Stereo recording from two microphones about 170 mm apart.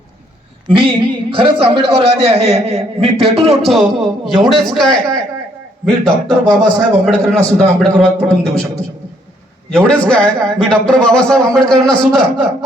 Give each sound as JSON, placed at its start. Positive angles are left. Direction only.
{"t": 0.7, "sound": "a man's voice", "side_deg": -30}
{"t": 3.6, "sound": "a man's voice", "side_deg": 0}
{"t": 9.7, "sound": "a man's voice", "side_deg": 5}